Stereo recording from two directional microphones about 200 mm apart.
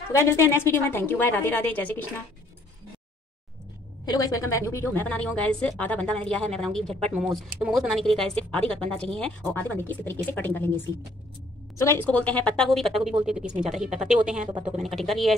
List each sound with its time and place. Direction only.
0.2 s a woman's voice: 15° left (ahead or behind)
4.0 s a woman's voice: 20° left (ahead or behind); by 14.4 s 5° right (ahead or behind)
14.5 s speech: 25° right (ahead or behind)
14.8 s a woman's voice: centre (ahead or behind)